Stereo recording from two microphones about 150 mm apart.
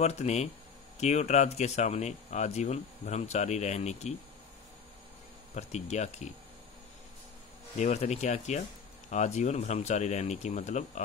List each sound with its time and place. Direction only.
0.0 s speech: 45° left (ahead or behind)
5.5 s speech: 50° left (ahead or behind)
7.7 s speech: 50° left (ahead or behind)